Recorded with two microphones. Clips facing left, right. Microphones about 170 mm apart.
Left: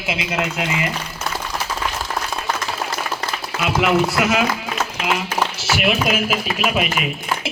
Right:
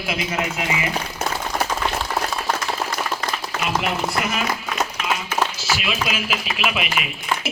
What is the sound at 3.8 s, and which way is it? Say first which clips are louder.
Speech: left 6 dB; 90° left.